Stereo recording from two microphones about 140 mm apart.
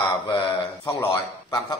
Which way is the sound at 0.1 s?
30° left (ahead or behind).